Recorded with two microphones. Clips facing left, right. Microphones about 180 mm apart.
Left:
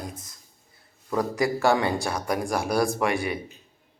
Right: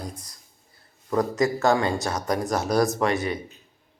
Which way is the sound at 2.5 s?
20° right (ahead or behind).